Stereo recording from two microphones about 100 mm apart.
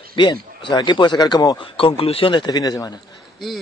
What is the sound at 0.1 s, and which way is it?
A man's voice, 55° left (ahead or behind).